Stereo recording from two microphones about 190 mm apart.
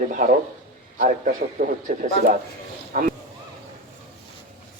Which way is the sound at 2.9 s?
45° right (ahead or behind).